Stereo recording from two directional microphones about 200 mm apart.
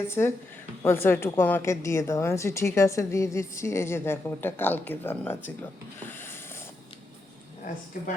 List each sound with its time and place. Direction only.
0.1 s a woman's voice: 10° left (ahead or behind)
6.0 s a sound: 10° left (ahead or behind)
7.9 s speech: 45° left (ahead or behind)